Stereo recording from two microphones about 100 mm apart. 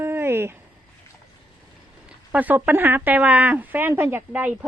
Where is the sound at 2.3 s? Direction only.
15° right (ahead or behind).